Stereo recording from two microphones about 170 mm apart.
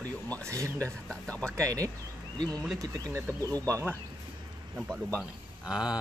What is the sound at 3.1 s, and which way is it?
Speech, 20° right (ahead or behind).